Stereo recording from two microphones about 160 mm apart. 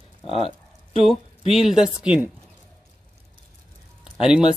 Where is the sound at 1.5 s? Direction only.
5° right (ahead or behind).